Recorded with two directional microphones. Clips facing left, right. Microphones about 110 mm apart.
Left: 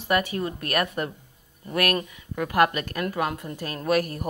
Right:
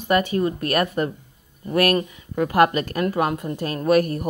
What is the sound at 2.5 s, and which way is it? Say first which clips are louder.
A woman's voice: right 3 dB; 35° right (ahead or behind).